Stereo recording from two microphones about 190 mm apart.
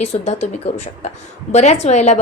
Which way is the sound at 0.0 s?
35° left (ahead or behind).